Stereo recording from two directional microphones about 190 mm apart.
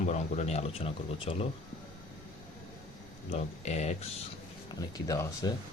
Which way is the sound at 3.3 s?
35° left (ahead or behind).